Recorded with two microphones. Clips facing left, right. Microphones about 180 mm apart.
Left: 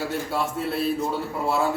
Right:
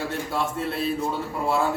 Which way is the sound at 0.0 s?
5° left (ahead or behind).